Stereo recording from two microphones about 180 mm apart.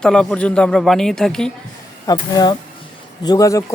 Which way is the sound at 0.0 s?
5° left (ahead or behind).